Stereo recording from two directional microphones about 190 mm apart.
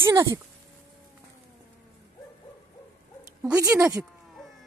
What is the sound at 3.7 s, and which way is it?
Speech, 10° right (ahead or behind).